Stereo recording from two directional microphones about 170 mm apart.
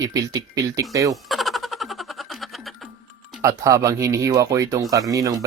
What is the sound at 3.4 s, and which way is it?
Speech, 20° right (ahead or behind).